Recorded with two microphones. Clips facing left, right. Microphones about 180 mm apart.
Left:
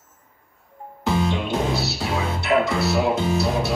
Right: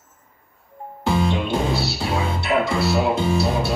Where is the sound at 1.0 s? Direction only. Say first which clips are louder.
Right 1 dB; 30° right (ahead or behind).